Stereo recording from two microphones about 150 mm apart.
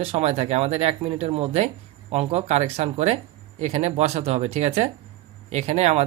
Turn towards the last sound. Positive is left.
turn(degrees=-45)  # may be behind; listen again after turning